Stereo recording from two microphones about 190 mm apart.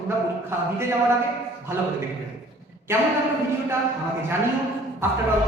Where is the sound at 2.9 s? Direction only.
10° right (ahead or behind).